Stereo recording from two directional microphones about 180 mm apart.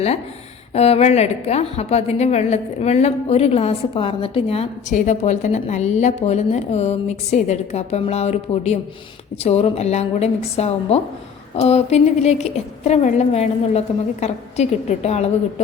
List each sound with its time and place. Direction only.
0.7 s a woman's voice: 35° left (ahead or behind)